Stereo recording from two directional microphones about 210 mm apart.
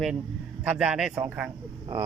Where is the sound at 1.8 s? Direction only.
20° right (ahead or behind).